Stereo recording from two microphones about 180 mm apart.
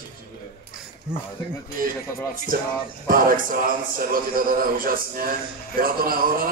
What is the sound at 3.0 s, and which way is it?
A man's voice, 50° right (ahead or behind).